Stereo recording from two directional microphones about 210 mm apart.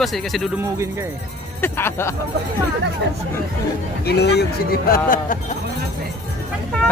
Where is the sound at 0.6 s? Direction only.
15° right (ahead or behind).